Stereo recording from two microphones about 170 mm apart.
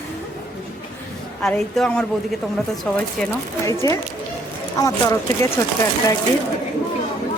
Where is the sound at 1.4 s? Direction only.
5° left (ahead or behind); by 5.5 s 20° left (ahead or behind).